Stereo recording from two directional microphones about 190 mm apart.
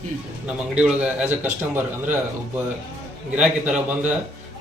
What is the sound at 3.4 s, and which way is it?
Speech, 5° right (ahead or behind).